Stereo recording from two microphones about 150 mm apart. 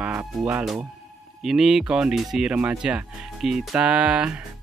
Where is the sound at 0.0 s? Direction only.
10° right (ahead or behind).